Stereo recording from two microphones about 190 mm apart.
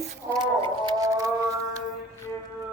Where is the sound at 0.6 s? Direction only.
20° right (ahead or behind).